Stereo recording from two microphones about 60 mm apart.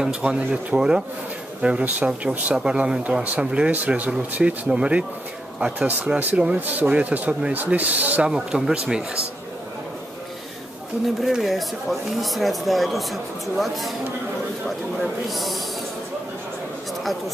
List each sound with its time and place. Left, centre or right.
0.0 s speech: centre
8.3 s speech: centre
11.1 s speech: centre
15.2 s speech: centre